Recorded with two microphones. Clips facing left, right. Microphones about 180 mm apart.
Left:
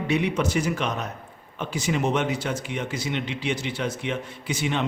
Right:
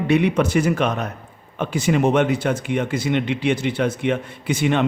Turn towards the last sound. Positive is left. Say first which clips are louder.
# right 7 dB
turn(degrees=-55)  # may be behind; listen again after turning